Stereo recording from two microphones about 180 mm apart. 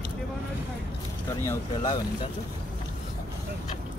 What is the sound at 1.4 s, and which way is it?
Speech, 20° left (ahead or behind).